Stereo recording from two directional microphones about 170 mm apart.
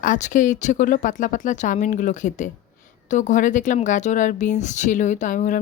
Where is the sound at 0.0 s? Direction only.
50° left (ahead or behind).